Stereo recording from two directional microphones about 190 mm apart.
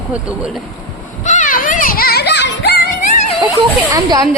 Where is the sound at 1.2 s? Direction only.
40° left (ahead or behind); by 2.8 s 65° left (ahead or behind).